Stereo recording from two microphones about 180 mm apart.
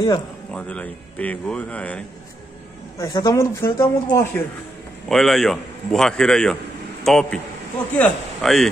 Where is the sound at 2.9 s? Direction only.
20° left (ahead or behind).